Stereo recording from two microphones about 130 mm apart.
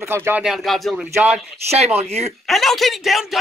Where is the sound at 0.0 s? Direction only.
20° right (ahead or behind).